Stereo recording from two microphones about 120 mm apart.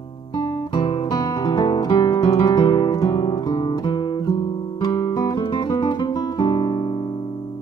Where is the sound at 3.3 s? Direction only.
35° left (ahead or behind).